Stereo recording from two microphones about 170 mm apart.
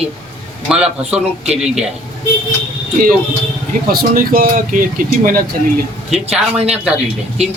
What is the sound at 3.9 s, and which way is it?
Speech, 60° right (ahead or behind).